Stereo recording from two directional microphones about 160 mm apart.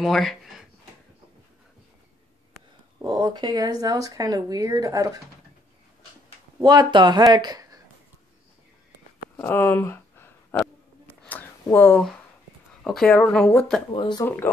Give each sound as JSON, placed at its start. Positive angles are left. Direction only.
{"t": 0.0, "sound": "speech", "side_deg": 0}
{"t": 3.0, "sound": "speech", "side_deg": -25}
{"t": 6.6, "sound": "speech", "side_deg": -25}
{"t": 9.4, "sound": "a sound", "side_deg": 15}
{"t": 12.8, "sound": "speech", "side_deg": 5}
{"t": 13.9, "sound": "speech", "side_deg": 30}
{"t": 14.2, "sound": "speech", "side_deg": 15}